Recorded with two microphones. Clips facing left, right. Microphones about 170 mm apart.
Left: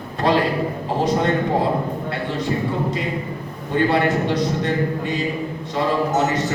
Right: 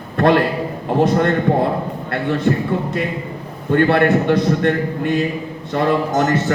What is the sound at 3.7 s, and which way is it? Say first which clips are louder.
Speech: right 4 dB; 60° right (ahead or behind).